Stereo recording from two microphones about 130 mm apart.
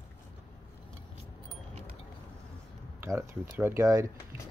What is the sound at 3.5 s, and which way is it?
Speech, 20° right (ahead or behind).